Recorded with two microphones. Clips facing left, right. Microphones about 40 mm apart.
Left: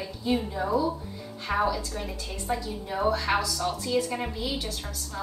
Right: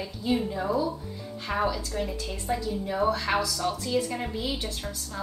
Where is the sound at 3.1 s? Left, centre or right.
Centre.